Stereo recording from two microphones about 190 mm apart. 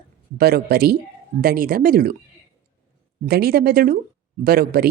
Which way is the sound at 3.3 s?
55° right (ahead or behind).